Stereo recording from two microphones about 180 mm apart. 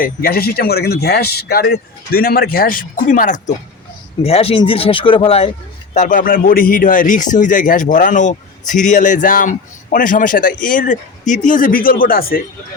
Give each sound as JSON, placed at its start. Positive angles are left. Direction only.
{"t": 0.0, "sound": "speech", "side_deg": 55}
{"t": 4.2, "sound": "speech", "side_deg": 35}
{"t": 5.9, "sound": "a man's voice", "side_deg": 45}